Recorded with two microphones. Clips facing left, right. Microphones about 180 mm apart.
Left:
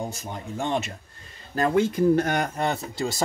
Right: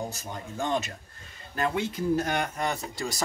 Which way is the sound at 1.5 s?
40° left (ahead or behind).